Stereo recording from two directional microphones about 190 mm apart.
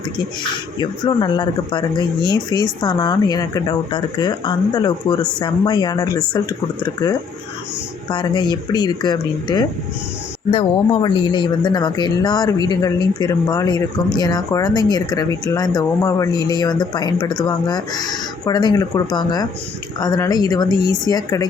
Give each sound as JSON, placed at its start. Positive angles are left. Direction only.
{"t": 0.8, "sound": "speech", "side_deg": 25}
{"t": 8.1, "sound": "speech", "side_deg": 25}